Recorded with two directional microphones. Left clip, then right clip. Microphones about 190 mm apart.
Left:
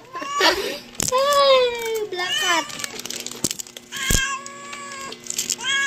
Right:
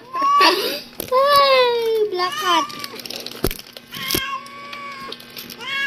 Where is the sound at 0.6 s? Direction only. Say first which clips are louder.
Right 3 dB; 25° right (ahead or behind).